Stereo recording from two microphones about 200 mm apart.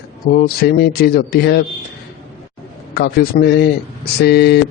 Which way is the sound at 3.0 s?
55° left (ahead or behind).